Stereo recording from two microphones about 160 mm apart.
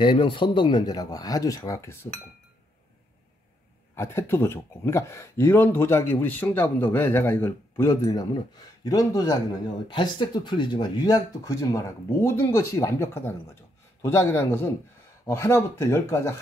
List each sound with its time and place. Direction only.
0.0 s speech: 30° left (ahead or behind)
3.9 s speech: 15° left (ahead or behind)